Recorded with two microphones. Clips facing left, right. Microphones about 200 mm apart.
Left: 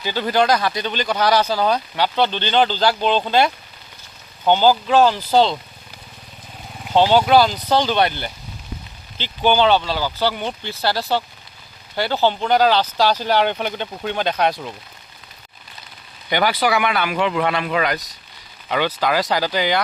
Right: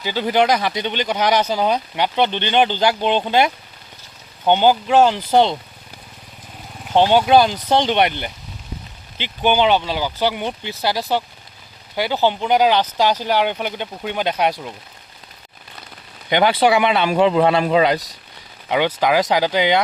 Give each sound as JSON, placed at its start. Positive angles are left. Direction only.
{"t": 0.0, "sound": "speech", "side_deg": -15}
{"t": 6.9, "sound": "speech", "side_deg": -15}
{"t": 16.3, "sound": "speech", "side_deg": -25}
{"t": 18.7, "sound": "speech", "side_deg": -15}